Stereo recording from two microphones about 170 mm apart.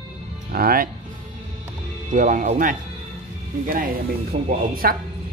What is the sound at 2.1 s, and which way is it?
Speech, 50° right (ahead or behind).